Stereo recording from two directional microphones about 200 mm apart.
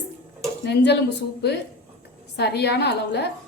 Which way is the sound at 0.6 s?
55° left (ahead or behind).